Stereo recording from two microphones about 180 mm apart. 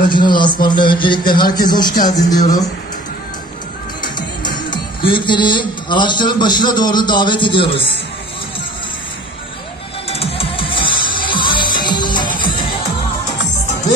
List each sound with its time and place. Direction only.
0.1 s speech: 25° left (ahead or behind)
2.3 s speech: 45° left (ahead or behind)
4.5 s speech: 25° left (ahead or behind)
10.0 s music: 35° left (ahead or behind)